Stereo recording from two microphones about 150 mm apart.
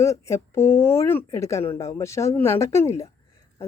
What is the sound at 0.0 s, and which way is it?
Speech, 20° left (ahead or behind).